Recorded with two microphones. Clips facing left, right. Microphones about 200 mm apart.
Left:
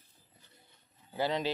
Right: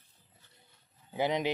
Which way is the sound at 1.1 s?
15° right (ahead or behind).